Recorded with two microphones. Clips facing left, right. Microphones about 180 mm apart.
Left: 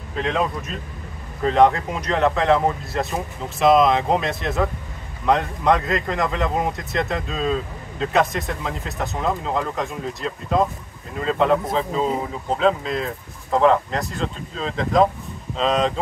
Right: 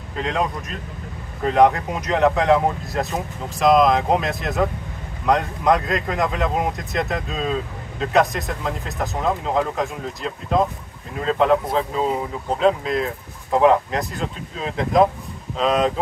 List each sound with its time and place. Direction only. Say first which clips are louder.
0.2 s speech: left 1 dB; centre (ahead or behind)
12.5 s speech: right 2 dB; centre (ahead or behind)